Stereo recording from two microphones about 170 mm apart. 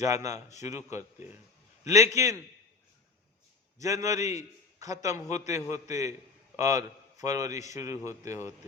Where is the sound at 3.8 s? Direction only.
20° right (ahead or behind).